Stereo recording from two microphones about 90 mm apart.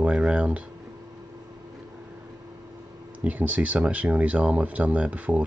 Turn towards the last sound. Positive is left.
turn(degrees=-15)  # may be behind; listen again after turning